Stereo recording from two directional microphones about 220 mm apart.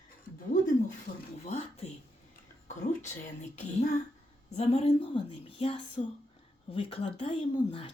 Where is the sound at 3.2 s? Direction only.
30° left (ahead or behind).